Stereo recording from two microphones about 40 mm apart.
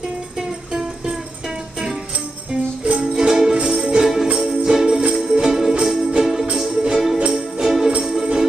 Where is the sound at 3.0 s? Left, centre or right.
Centre.